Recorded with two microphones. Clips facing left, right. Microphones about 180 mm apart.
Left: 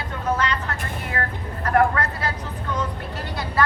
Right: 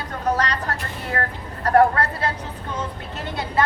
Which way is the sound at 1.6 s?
35° right (ahead or behind).